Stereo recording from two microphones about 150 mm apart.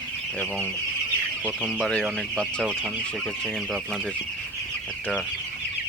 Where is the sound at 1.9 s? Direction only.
5° left (ahead or behind).